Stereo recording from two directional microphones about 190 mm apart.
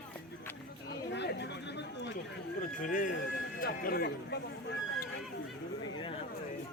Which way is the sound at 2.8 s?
45° left (ahead or behind).